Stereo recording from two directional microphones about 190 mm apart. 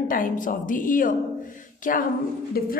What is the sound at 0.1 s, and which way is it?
Speech, 45° left (ahead or behind).